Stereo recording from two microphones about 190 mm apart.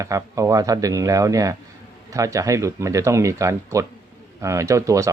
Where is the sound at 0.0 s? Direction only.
15° right (ahead or behind).